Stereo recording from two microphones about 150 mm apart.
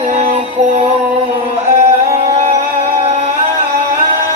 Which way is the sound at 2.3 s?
50° right (ahead or behind).